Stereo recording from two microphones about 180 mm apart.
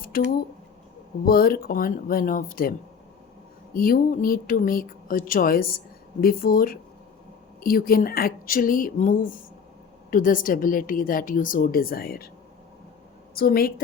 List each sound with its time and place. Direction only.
0.0 s speech: 55° left (ahead or behind)
3.8 s speech: 50° left (ahead or behind)
13.3 s a woman's voice: 55° left (ahead or behind)